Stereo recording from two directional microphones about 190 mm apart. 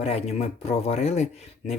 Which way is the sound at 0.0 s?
30° left (ahead or behind).